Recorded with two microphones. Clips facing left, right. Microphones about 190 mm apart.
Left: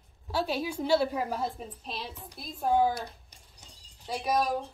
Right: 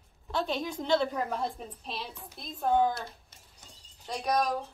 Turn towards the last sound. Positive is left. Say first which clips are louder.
# left 1 dB
turn(degrees=5)  # may be behind; listen again after turning